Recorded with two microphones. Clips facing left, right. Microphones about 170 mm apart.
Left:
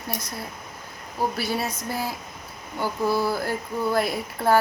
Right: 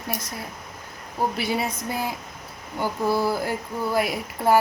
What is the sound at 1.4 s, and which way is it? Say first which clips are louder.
A woman's voice: right 1 dB; 15° right (ahead or behind).